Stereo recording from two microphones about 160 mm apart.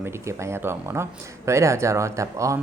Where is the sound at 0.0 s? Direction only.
15° right (ahead or behind).